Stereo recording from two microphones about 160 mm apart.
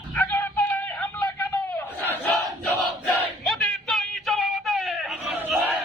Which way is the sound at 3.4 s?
Centre (ahead or behind).